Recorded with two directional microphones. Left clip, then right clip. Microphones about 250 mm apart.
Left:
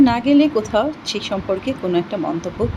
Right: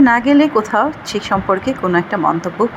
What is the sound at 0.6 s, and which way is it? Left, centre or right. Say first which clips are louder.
Speech: right 4 dB; centre.